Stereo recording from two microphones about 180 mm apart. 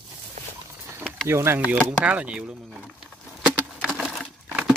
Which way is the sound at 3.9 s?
Centre (ahead or behind).